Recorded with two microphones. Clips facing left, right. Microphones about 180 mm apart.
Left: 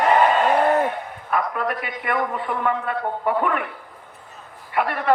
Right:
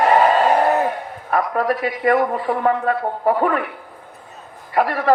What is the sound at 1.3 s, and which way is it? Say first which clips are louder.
A man's voice: right 5 dB; 35° right (ahead or behind).